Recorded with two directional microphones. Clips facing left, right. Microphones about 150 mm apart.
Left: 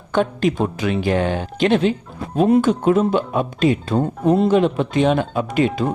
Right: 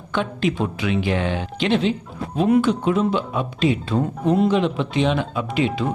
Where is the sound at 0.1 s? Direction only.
45° left (ahead or behind).